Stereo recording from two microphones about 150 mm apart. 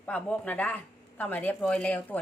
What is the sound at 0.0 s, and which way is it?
A woman's voice, 10° left (ahead or behind).